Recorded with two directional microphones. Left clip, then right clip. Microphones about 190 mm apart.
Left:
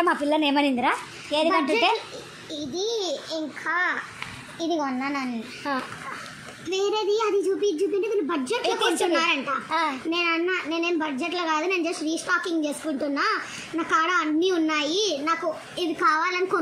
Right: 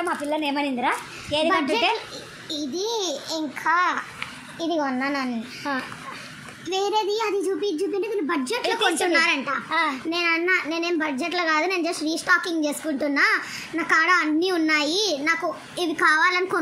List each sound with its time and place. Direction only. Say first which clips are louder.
0.0 s a woman's voice: left 3 dB; 20° left (ahead or behind)
2.5 s a child's voice: right 1 dB; 40° right (ahead or behind)
4.6 s child singing: right 2 dB; 25° right (ahead or behind)
5.7 s a child's voice: even; centre (ahead or behind)
6.7 s a child's voice: right 1 dB; 30° right (ahead or behind)
9.7 s a child's voice: right 2 dB; centre (ahead or behind)
10.1 s a child's voice: right 4 dB; 30° right (ahead or behind)
15.8 s child singing: right 3 dB; 30° right (ahead or behind)